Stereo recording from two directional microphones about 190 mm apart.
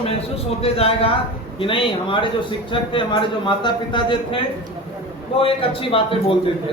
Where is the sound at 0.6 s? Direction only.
30° left (ahead or behind).